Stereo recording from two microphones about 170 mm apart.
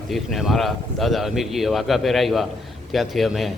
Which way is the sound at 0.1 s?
Centre (ahead or behind).